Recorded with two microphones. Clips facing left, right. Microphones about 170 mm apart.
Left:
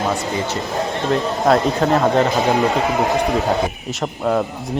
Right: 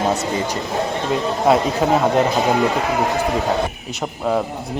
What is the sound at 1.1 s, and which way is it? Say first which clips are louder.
A man's voice: even; 5° right (ahead or behind).